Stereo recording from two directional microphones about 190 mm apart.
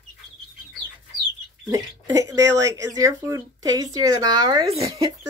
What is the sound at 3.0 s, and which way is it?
Speech, 15° right (ahead or behind).